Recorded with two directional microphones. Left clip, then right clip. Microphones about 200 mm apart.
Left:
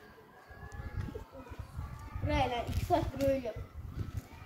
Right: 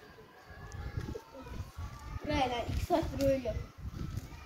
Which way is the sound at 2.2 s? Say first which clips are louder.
Even; 10° right (ahead or behind).